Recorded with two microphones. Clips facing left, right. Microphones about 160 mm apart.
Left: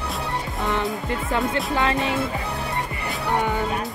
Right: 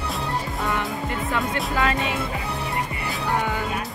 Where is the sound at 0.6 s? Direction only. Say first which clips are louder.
Left 4 dB; 20° left (ahead or behind).